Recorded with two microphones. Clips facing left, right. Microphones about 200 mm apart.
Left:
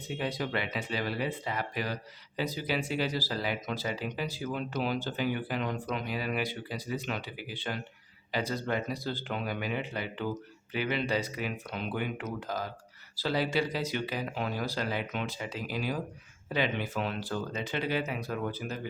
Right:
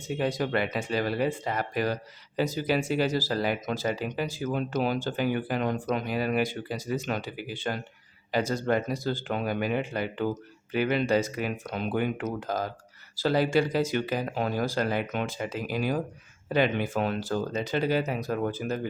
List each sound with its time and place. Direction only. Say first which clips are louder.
0.2 s speech: right 6 dB; 45° right (ahead or behind)